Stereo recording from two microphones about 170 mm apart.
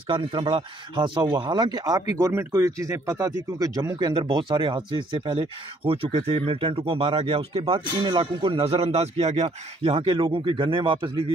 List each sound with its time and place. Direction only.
0.1 s speech: 30° right (ahead or behind)